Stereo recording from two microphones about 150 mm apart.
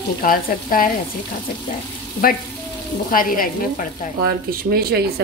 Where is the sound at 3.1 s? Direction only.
70° left (ahead or behind).